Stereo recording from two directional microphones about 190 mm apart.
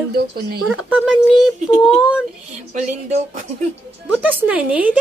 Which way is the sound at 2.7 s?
40° right (ahead or behind).